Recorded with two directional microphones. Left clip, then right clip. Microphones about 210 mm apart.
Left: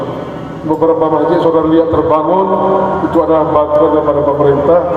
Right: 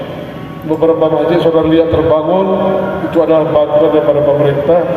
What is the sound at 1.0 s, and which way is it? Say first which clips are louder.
A man's voice: even; 25° left (ahead or behind).